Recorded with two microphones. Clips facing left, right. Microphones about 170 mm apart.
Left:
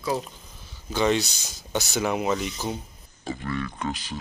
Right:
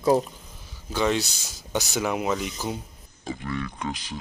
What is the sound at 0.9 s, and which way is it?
Speech, centre (ahead or behind).